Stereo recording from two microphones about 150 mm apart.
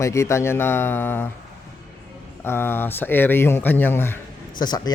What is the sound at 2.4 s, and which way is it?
Speech, 15° left (ahead or behind).